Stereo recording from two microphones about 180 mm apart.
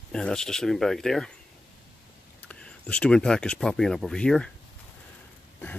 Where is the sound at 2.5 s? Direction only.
5° left (ahead or behind).